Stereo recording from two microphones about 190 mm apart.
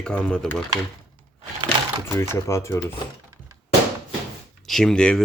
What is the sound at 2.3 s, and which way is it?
Speech, 15° left (ahead or behind).